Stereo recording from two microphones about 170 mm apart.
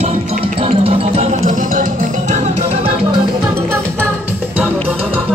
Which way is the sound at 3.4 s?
15° right (ahead or behind).